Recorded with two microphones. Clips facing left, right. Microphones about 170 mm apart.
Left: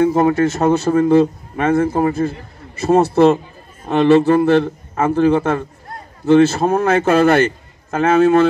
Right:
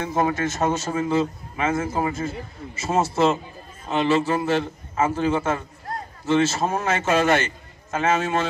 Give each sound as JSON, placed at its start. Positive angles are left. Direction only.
{"t": 0.3, "sound": "a man's voice", "side_deg": 60}